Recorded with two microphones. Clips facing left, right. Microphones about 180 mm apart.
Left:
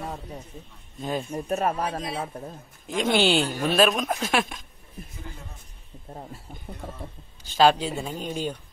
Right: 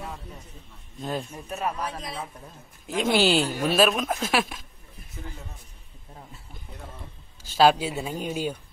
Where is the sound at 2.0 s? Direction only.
30° left (ahead or behind).